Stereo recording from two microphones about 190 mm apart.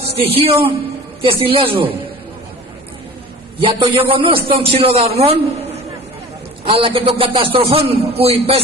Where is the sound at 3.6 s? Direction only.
25° right (ahead or behind).